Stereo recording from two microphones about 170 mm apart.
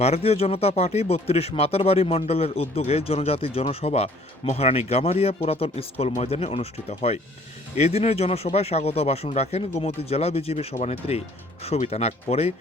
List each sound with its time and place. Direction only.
0.0 s speech: 35° left (ahead or behind)